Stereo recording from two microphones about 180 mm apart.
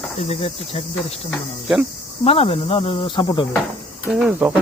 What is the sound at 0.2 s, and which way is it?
Speech, 35° left (ahead or behind).